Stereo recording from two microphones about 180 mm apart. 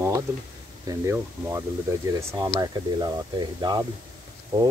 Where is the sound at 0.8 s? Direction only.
15° right (ahead or behind).